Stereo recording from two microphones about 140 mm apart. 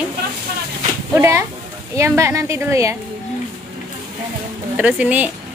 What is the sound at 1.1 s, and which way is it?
A woman's voice, 20° right (ahead or behind).